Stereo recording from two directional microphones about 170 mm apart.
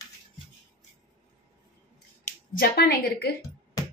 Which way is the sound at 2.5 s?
70° left (ahead or behind).